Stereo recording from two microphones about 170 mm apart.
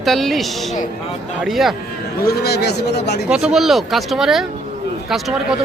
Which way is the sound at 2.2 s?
65° left (ahead or behind).